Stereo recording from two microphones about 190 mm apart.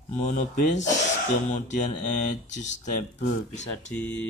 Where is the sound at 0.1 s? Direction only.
40° left (ahead or behind).